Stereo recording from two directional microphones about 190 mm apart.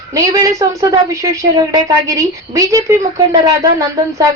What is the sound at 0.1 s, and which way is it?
Speech, 15° right (ahead or behind).